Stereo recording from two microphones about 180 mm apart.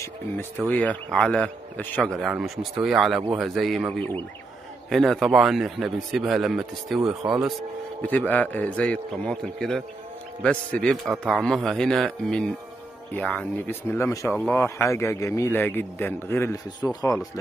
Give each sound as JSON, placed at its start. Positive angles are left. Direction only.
{"t": 0.7, "sound": "a man's voice", "side_deg": 5}
{"t": 4.8, "sound": "a man's voice", "side_deg": 0}
{"t": 8.0, "sound": "a man's voice", "side_deg": 5}